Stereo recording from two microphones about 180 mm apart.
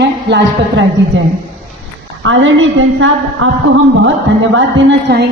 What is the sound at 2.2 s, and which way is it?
A man's voice, 90° right.